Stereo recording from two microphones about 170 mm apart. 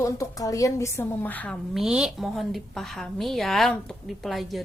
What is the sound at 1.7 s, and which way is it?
A woman's voice, 5° right (ahead or behind).